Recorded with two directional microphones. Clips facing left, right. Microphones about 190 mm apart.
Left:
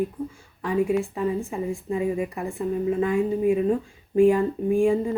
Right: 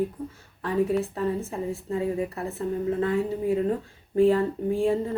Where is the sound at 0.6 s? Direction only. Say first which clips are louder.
Left 1 dB; 15° left (ahead or behind).